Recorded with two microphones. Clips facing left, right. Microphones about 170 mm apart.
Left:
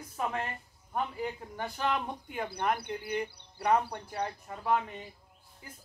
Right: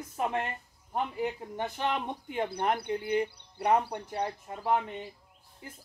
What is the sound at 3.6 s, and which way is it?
Speech, 25° right (ahead or behind).